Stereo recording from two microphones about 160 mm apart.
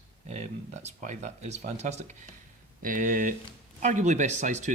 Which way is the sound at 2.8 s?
55° right (ahead or behind).